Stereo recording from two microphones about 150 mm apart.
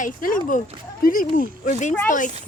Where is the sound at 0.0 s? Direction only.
65° left (ahead or behind).